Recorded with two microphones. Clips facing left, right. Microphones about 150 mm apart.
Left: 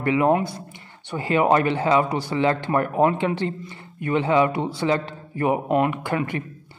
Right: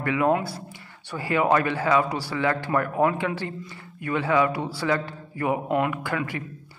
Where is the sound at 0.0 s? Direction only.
20° left (ahead or behind).